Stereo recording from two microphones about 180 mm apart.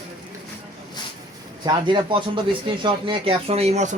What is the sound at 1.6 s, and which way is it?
A man's voice, 25° right (ahead or behind).